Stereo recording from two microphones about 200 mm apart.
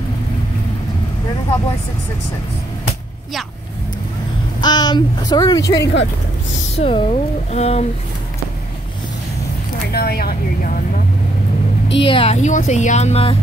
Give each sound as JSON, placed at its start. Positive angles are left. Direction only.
{"t": 4.6, "sound": "a woman's voice", "side_deg": 20}
{"t": 6.7, "sound": "speech", "side_deg": 30}
{"t": 9.9, "sound": "speech", "side_deg": 50}
{"t": 12.0, "sound": "speech", "side_deg": 25}